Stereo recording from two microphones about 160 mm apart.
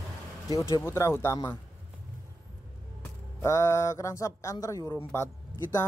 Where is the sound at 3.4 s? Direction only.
20° left (ahead or behind).